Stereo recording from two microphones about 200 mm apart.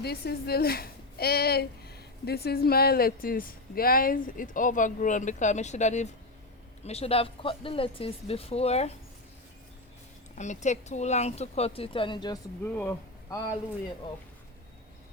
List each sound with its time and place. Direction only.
0.0 s a woman's voice: 55° left (ahead or behind); by 8.9 s 30° left (ahead or behind)
10.3 s speech: 35° left (ahead or behind)
12.6 s speech: 10° left (ahead or behind)